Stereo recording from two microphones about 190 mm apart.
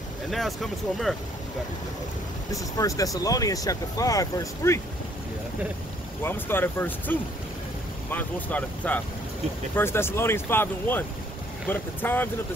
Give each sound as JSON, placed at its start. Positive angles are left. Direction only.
{"t": 0.3, "sound": "speech", "side_deg": 0}
{"t": 2.5, "sound": "speech", "side_deg": 20}
{"t": 6.2, "sound": "speech", "side_deg": 10}